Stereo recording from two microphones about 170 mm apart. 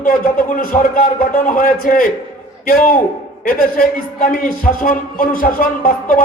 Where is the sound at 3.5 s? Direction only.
55° left (ahead or behind).